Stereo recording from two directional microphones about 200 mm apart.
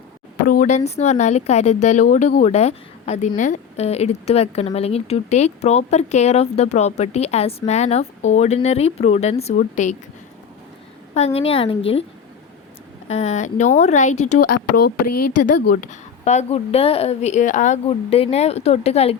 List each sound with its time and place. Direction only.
0.4 s a woman's voice: 45° left (ahead or behind)
11.1 s a woman's voice: 30° left (ahead or behind)
13.1 s a woman's voice: 35° left (ahead or behind)
15.6 s a woman's voice: 45° left (ahead or behind)